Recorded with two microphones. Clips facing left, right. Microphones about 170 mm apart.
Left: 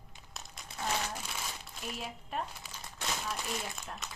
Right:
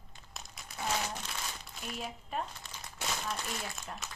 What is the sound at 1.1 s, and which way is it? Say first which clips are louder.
Crumpling: even; 5° left (ahead or behind).